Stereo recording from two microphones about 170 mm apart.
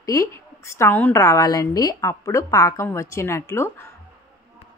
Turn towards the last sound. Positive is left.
turn(degrees=15)  # may be behind; listen again after turning